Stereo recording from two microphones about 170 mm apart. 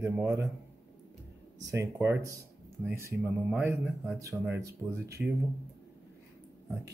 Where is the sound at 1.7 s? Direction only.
15° right (ahead or behind).